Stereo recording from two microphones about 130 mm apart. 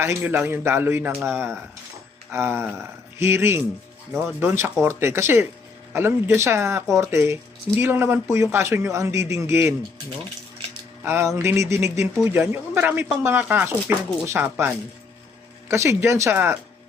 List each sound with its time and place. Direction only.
0.0 s speech: 20° right (ahead or behind)
2.3 s a man's voice: 20° right (ahead or behind)
11.0 s a man's voice: 20° right (ahead or behind)
15.7 s a man's voice: 20° right (ahead or behind)